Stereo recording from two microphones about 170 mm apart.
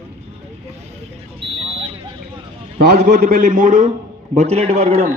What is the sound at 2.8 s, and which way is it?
A man's voice, 70° right (ahead or behind).